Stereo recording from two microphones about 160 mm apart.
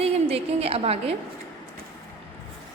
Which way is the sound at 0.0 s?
40° right (ahead or behind).